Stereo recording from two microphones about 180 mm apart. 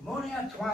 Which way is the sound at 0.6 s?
Centre (ahead or behind).